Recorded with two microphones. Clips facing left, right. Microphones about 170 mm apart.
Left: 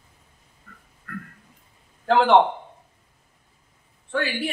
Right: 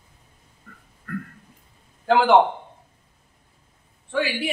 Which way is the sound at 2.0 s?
5° right (ahead or behind).